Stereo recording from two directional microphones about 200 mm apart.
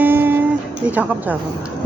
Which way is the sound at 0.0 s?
10° right (ahead or behind).